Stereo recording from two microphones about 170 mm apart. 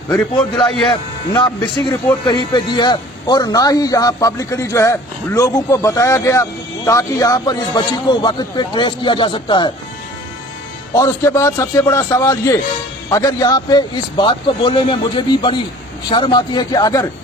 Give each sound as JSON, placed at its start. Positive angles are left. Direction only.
{"t": 0.3, "sound": "a man's voice", "side_deg": 25}
{"t": 2.2, "sound": "a man's voice", "side_deg": 25}
{"t": 10.9, "sound": "a man's voice", "side_deg": 15}